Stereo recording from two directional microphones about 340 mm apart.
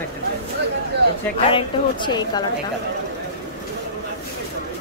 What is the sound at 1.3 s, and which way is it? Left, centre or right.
A woman's voice, centre.